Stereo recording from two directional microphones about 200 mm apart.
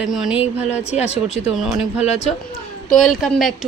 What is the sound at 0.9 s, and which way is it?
Speech, 30° left (ahead or behind).